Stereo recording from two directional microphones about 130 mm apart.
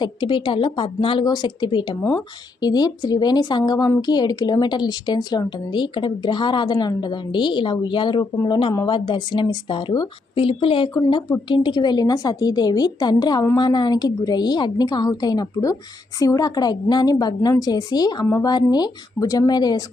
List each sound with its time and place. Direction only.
0.0 s speech: 40° left (ahead or behind)